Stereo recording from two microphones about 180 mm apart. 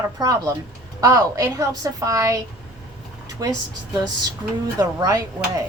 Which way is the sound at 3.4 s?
20° right (ahead or behind).